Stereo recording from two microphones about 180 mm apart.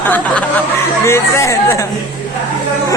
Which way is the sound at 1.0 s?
15° left (ahead or behind).